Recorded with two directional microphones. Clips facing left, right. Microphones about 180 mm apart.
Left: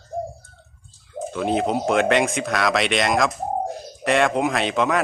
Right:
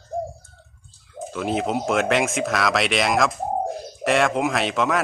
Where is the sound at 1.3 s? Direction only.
Centre (ahead or behind).